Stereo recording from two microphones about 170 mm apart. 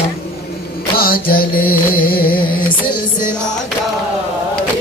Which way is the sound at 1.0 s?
60° left (ahead or behind).